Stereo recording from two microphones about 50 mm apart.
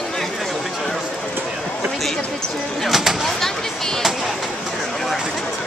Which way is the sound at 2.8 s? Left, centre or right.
Centre.